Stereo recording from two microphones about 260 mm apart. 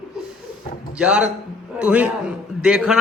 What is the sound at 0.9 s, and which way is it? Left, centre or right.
A man's voice, centre.